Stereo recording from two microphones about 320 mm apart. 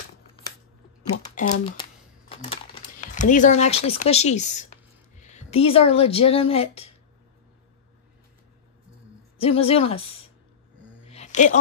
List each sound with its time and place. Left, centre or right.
1.1 s speech: left
3.1 s speech: left
9.4 s speech: centre
11.1 s a sound: left